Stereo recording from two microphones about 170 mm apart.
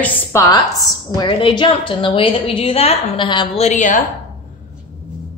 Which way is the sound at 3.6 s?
45° left (ahead or behind).